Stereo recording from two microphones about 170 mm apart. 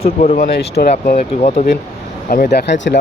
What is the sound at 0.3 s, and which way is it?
Speech, 65° left (ahead or behind).